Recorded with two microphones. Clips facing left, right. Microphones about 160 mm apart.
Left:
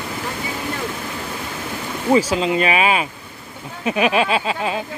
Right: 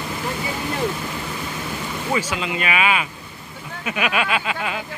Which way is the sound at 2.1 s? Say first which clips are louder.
Left 9 dB; 35° left (ahead or behind).